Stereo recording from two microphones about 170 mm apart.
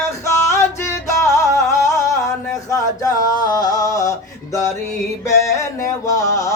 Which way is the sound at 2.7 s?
20° left (ahead or behind).